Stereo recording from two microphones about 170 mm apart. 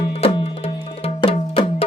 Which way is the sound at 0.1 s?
35° left (ahead or behind).